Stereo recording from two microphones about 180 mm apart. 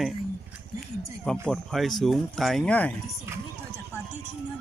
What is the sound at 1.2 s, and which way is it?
Speech, 5° left (ahead or behind).